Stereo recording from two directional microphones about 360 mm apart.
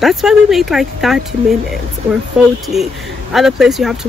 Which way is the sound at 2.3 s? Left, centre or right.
Centre.